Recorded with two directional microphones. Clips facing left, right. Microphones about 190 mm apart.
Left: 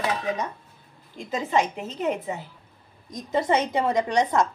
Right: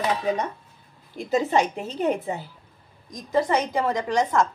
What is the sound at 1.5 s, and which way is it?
Speech, 35° right (ahead or behind).